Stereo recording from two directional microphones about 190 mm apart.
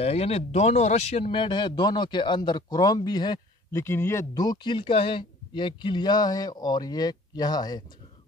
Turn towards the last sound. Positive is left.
turn(degrees=20)  # may be behind; listen again after turning